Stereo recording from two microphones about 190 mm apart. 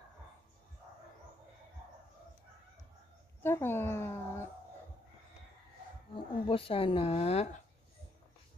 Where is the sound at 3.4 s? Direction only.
10° left (ahead or behind).